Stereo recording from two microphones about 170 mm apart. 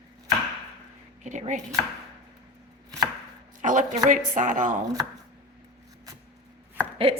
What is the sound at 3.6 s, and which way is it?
A woman's voice, 50° right (ahead or behind).